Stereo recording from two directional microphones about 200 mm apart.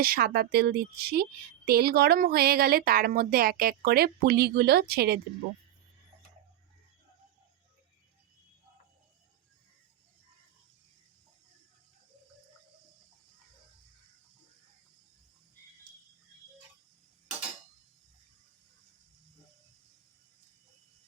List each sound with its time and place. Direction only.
0.0 s speech: 50° right (ahead or behind)